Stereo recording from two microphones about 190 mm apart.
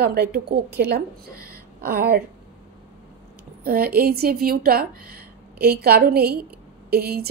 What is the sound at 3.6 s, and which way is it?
A woman's voice, 50° right (ahead or behind).